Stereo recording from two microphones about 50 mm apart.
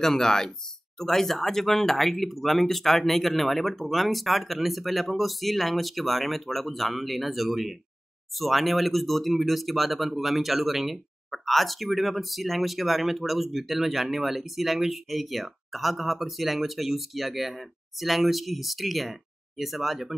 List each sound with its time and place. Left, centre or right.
0.0 s speech: centre